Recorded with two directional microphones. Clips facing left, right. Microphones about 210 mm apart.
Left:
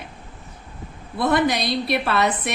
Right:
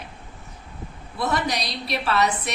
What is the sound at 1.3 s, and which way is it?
Speech, 55° left (ahead or behind).